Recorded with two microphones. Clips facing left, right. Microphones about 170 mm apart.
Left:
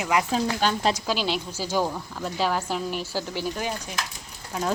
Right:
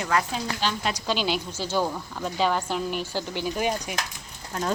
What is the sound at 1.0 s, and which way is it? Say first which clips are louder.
Speech: even; centre (ahead or behind).